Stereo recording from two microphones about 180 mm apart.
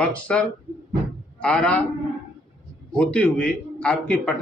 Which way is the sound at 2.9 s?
5° left (ahead or behind).